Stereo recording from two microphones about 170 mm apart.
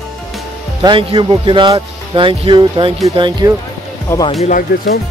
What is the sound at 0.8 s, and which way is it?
Speech, 30° right (ahead or behind).